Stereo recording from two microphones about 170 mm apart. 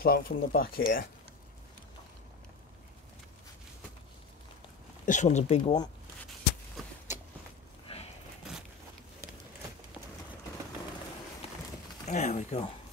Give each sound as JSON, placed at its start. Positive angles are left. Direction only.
{"t": 0.0, "sound": "speech", "side_deg": 60}
{"t": 5.0, "sound": "speech", "side_deg": 45}
{"t": 7.8, "sound": "a sound", "side_deg": 35}
{"t": 12.1, "sound": "speech", "side_deg": 45}